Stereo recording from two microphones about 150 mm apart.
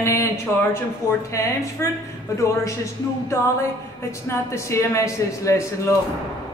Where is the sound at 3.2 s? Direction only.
20° left (ahead or behind).